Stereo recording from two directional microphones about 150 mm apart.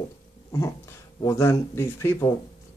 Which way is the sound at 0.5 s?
20° left (ahead or behind).